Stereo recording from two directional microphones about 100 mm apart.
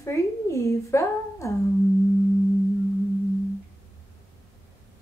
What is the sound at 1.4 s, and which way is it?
Music, 30° left (ahead or behind).